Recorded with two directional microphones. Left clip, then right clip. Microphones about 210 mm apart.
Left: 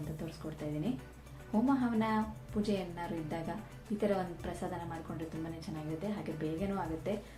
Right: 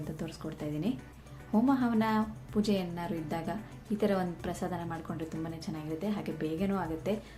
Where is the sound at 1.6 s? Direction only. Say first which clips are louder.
Right 3 dB; 20° right (ahead or behind).